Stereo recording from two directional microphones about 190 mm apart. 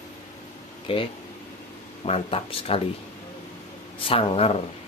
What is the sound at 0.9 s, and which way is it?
Speech, 30° left (ahead or behind).